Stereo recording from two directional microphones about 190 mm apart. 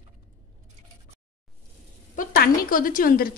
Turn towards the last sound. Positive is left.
turn(degrees=50)  # may be behind; listen again after turning